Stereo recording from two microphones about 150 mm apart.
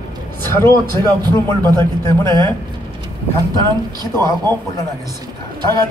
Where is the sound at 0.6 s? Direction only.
20° left (ahead or behind).